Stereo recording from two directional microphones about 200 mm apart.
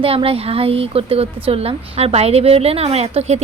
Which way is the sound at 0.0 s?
30° right (ahead or behind).